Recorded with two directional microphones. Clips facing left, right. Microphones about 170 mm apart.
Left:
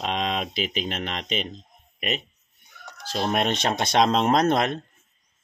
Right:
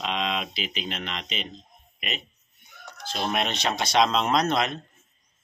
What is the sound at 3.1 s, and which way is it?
Speech, 45° left (ahead or behind).